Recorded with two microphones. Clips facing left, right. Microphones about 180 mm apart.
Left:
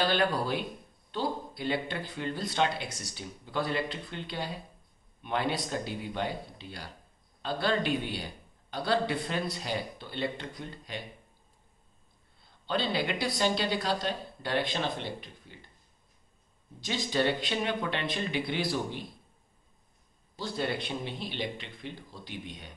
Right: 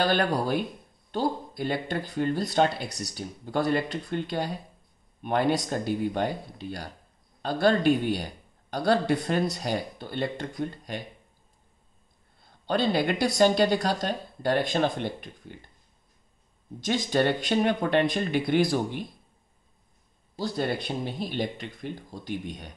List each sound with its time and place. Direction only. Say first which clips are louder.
0.0 s a man's voice: right 3 dB; 45° right (ahead or behind)
12.6 s a man's voice: right 6 dB; 45° right (ahead or behind)
16.8 s a man's voice: right 5 dB; 50° right (ahead or behind)
20.3 s a man's voice: right 4 dB; 40° right (ahead or behind)